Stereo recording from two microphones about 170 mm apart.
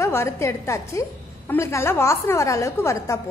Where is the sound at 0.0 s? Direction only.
15° left (ahead or behind).